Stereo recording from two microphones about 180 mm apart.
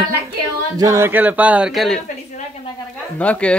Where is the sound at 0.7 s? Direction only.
15° right (ahead or behind); by 2.0 s centre (ahead or behind).